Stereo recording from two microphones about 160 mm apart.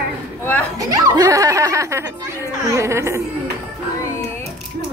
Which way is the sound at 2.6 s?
20° right (ahead or behind).